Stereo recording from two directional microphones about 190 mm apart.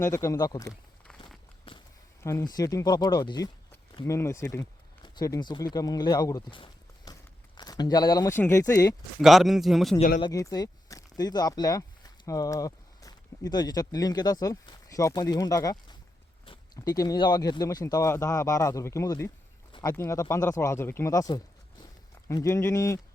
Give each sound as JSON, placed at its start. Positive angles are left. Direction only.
{"t": 0.0, "sound": "speech", "side_deg": 15}
{"t": 1.7, "sound": "walk", "side_deg": 25}
{"t": 2.2, "sound": "speech", "side_deg": 15}
{"t": 9.2, "sound": "a man's voice", "side_deg": 0}
{"t": 10.2, "sound": "speech", "side_deg": 20}